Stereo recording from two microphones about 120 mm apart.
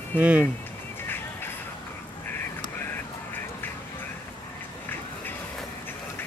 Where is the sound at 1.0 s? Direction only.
15° left (ahead or behind).